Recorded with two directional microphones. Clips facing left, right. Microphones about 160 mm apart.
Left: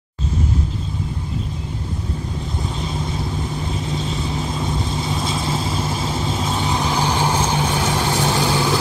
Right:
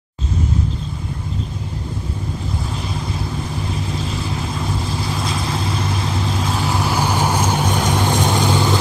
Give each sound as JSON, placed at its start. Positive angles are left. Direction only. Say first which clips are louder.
{"t": 3.7, "sound": "vehicle", "louder": "even", "side_deg": 0}